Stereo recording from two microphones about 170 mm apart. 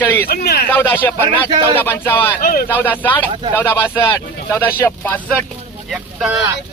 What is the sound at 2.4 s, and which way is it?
Speech, 60° left (ahead or behind).